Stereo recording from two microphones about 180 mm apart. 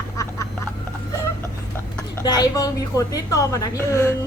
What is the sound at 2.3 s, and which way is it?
A woman's voice, 20° left (ahead or behind).